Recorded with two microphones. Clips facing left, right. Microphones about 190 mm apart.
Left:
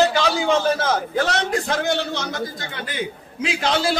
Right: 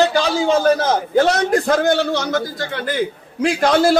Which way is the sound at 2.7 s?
55° right (ahead or behind).